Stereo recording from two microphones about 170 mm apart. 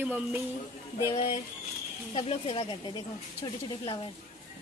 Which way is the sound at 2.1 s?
30° left (ahead or behind).